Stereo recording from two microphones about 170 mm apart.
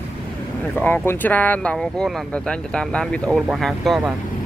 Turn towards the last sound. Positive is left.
turn(degrees=0)  # may be behind; listen again after turning